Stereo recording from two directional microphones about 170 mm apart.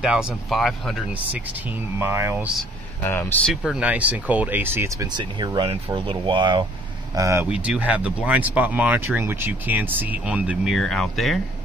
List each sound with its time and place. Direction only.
0.0 s speech: 5° right (ahead or behind)
3.0 s speech: 10° left (ahead or behind)
3.7 s speech: 5° right (ahead or behind)
7.5 s speech: 5° right (ahead or behind)